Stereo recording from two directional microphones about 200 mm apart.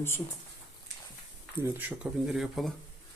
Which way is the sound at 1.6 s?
5° right (ahead or behind).